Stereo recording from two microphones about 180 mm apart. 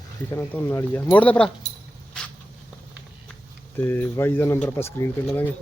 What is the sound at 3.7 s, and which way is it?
Speech, 10° left (ahead or behind).